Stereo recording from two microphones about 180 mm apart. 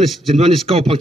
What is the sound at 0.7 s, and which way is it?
Speech, 35° right (ahead or behind).